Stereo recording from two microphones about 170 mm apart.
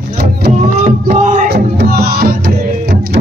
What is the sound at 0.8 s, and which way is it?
Music, 50° right (ahead or behind).